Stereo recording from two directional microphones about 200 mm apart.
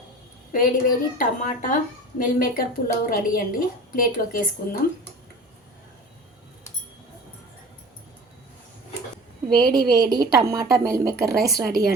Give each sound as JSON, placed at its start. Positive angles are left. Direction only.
{"t": 0.5, "sound": "a woman's voice", "side_deg": 45}
{"t": 9.6, "sound": "a woman's voice", "side_deg": -20}